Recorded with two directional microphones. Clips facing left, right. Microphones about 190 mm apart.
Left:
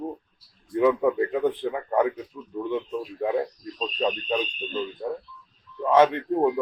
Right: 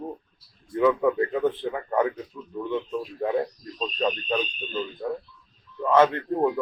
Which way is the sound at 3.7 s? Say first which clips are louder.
Even; 5° left (ahead or behind).